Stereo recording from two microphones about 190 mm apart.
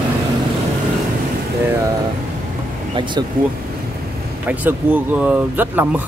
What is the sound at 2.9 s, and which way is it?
Speech, 25° right (ahead or behind).